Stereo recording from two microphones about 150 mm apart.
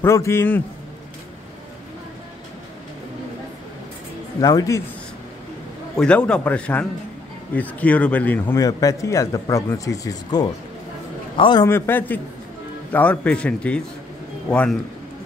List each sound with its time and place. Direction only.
0.0 s speech: 20° left (ahead or behind)
4.4 s speech: 25° left (ahead or behind)
5.9 s speech: 5° left (ahead or behind)
8.5 s a man's voice: 25° left (ahead or behind)
11.6 s speech: 15° left (ahead or behind)